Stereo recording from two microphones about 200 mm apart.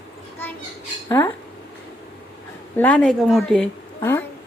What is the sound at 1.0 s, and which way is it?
Speech, 10° left (ahead or behind).